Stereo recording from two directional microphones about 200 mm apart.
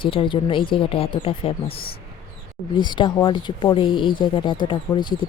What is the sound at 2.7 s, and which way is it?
Speech, 25° left (ahead or behind).